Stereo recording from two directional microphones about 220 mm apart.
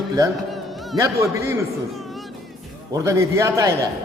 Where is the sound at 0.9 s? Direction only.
15° right (ahead or behind).